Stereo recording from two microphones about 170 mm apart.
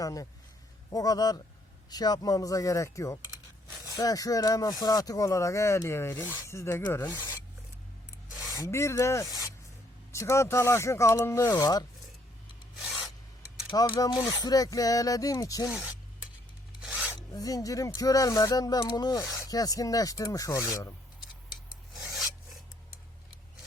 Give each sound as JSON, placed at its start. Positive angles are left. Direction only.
{"t": 0.0, "sound": "speech", "side_deg": 20}
{"t": 8.5, "sound": "speech", "side_deg": 20}
{"t": 13.7, "sound": "speech", "side_deg": 30}
{"t": 17.2, "sound": "speech", "side_deg": 20}